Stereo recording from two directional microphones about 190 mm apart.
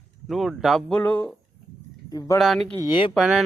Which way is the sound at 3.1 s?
Centre (ahead or behind).